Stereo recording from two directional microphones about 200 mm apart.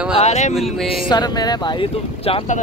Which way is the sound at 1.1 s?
20° left (ahead or behind).